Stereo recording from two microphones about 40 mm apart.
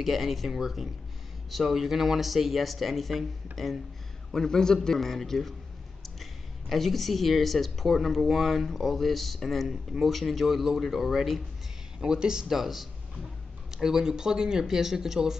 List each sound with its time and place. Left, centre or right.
0.0 s speech: centre
4.3 s a man's voice: centre
6.7 s speech: centre
12.0 s speech: centre